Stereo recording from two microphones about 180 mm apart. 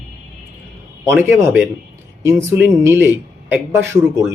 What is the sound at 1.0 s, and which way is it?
Speech, 10° right (ahead or behind).